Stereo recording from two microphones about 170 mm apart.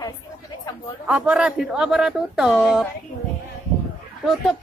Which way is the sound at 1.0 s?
5° right (ahead or behind).